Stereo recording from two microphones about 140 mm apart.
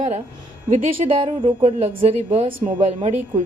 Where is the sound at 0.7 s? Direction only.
40° right (ahead or behind).